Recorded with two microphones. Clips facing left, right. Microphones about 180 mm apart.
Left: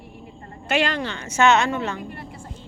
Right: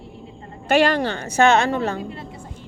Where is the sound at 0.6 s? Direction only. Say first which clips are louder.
Right 6 dB; 50° right (ahead or behind).